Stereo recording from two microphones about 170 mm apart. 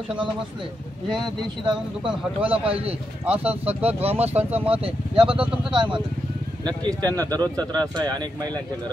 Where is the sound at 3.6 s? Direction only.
35° right (ahead or behind).